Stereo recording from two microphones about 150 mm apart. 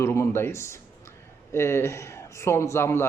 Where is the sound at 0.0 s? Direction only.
15° left (ahead or behind).